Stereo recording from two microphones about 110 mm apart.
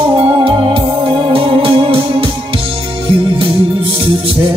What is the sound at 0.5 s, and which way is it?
Music, 55° right (ahead or behind).